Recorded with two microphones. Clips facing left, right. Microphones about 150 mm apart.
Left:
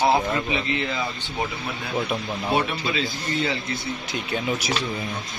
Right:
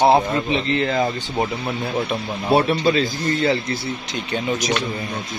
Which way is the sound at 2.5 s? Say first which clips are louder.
Right 8 dB; 35° right (ahead or behind).